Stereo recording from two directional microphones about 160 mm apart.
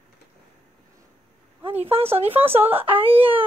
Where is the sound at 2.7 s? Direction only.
35° right (ahead or behind).